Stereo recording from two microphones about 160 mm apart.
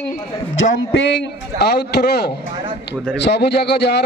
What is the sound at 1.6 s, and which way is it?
A man's voice, 90° left.